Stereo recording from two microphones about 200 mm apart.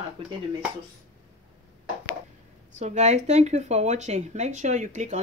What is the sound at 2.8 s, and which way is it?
Speech, 35° right (ahead or behind).